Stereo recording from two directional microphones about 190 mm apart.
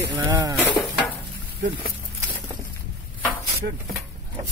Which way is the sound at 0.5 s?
10° left (ahead or behind).